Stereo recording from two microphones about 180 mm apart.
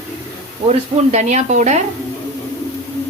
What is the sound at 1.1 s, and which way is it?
Speech, 40° right (ahead or behind).